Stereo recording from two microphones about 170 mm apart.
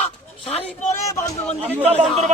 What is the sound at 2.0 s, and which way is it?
Speech, centre (ahead or behind).